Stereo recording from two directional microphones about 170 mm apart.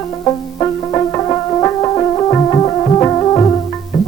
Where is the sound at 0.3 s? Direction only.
20° left (ahead or behind).